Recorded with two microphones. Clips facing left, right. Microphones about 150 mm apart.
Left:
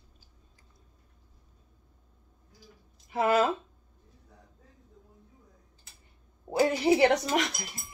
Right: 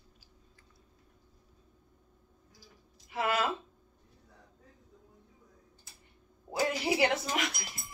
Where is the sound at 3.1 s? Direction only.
35° left (ahead or behind).